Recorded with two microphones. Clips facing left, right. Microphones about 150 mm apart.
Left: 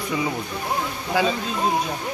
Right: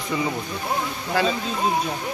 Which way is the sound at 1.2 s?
15° left (ahead or behind).